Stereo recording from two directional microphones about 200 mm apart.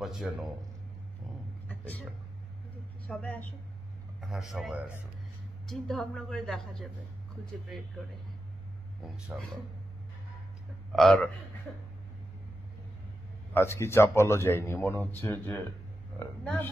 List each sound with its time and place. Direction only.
0.0 s a woman's voice: centre (ahead or behind)
1.7 s a sound: 10° left (ahead or behind)
3.1 s a man's voice: 5° left (ahead or behind)
9.0 s a woman's voice: 5° right (ahead or behind)
10.9 s a man's voice: centre (ahead or behind)
13.5 s a man's voice: 10° left (ahead or behind)